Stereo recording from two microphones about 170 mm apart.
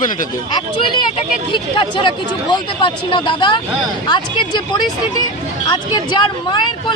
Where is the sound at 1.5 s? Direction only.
30° left (ahead or behind).